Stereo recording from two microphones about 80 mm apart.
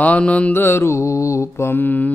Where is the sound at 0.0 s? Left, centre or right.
Centre.